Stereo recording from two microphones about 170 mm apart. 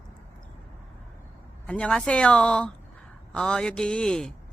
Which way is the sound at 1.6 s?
5° left (ahead or behind).